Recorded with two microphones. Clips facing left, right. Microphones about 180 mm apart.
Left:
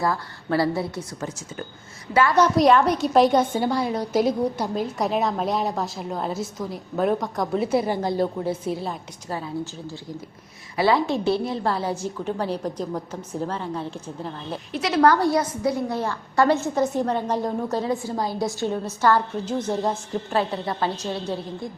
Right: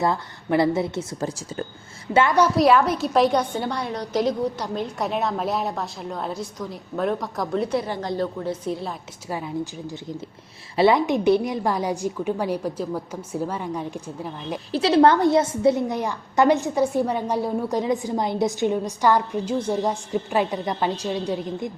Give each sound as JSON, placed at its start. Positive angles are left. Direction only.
{"t": 0.0, "sound": "a woman's voice", "side_deg": -20}
{"t": 1.2, "sound": "a woman's voice", "side_deg": -35}
{"t": 2.3, "sound": "a woman's voice", "side_deg": -10}
{"t": 9.3, "sound": "a woman's voice", "side_deg": -15}
{"t": 14.7, "sound": "a woman's voice", "side_deg": -30}